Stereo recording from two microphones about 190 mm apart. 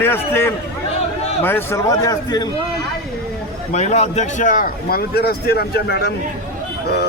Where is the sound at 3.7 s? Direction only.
35° left (ahead or behind).